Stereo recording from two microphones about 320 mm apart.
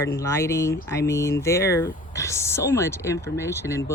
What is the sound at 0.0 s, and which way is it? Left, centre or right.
Speech, centre.